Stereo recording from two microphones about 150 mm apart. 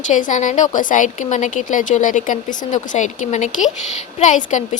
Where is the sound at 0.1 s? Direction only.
55° left (ahead or behind).